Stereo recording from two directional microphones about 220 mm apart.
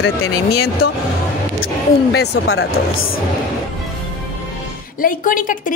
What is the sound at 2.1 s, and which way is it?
Speech, 50° left (ahead or behind).